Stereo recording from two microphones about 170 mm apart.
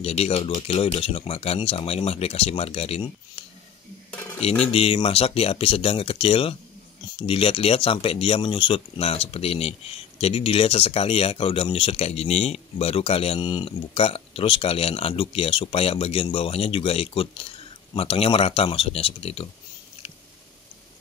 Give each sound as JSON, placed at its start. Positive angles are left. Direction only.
{"t": 0.0, "sound": "speech", "side_deg": 35}
{"t": 4.4, "sound": "speech", "side_deg": 35}